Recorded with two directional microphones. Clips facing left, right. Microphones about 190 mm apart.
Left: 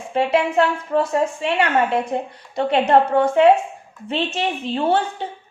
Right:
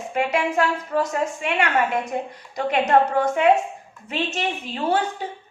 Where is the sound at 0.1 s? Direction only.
30° left (ahead or behind).